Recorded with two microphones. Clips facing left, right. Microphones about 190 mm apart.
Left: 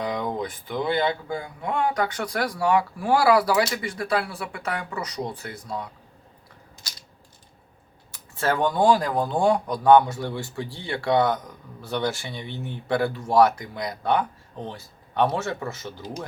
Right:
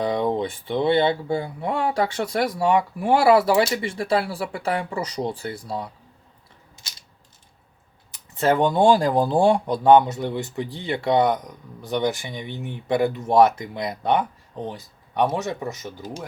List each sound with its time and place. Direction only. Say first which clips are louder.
0.0 s speech: right 5 dB; 30° right (ahead or behind)
8.1 s speech: right 5 dB; 20° right (ahead or behind)